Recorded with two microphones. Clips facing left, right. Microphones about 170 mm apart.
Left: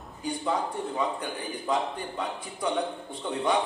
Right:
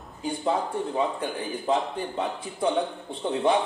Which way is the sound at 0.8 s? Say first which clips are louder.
Right 3 dB; 25° right (ahead or behind).